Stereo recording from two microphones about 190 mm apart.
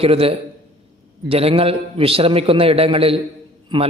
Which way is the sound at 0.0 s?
30° right (ahead or behind).